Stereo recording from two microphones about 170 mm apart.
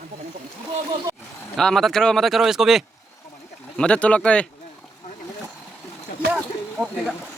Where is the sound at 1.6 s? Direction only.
Centre (ahead or behind).